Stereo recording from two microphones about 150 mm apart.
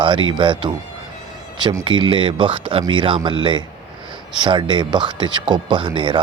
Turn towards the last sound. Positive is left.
turn(degrees=-30)  # may be behind; listen again after turning